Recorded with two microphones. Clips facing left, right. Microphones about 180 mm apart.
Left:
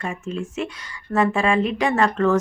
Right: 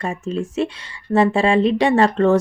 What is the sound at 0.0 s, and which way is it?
Speech, 40° right (ahead or behind).